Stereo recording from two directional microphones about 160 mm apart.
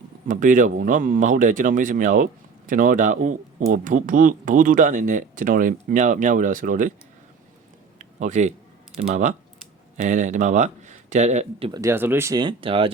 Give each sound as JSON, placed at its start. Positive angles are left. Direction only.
{"t": 0.3, "sound": "speech", "side_deg": -55}
{"t": 7.9, "sound": "a sound", "side_deg": -50}
{"t": 9.0, "sound": "speech", "side_deg": -50}
{"t": 11.7, "sound": "speech", "side_deg": -20}